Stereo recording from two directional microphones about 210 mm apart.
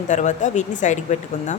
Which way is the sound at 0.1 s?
35° left (ahead or behind).